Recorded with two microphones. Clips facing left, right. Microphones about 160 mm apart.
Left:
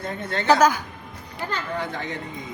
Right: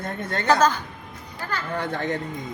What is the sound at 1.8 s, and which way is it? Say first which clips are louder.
Speech: right 3 dB; 50° right (ahead or behind).